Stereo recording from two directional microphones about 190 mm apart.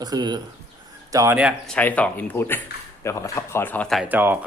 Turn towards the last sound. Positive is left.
turn(degrees=-10)  # may be behind; listen again after turning